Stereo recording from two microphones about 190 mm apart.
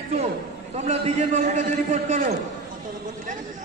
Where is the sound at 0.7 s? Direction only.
35° right (ahead or behind).